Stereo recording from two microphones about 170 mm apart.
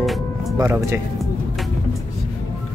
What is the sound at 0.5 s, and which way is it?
Speech, 15° right (ahead or behind).